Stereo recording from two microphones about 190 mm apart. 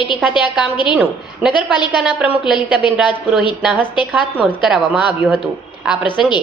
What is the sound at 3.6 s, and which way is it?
A woman's voice, 5° right (ahead or behind).